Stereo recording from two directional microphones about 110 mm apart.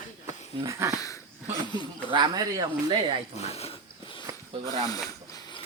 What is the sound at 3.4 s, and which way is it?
Speech, 70° left (ahead or behind).